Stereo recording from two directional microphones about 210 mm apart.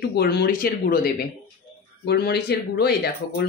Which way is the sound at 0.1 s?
50° left (ahead or behind).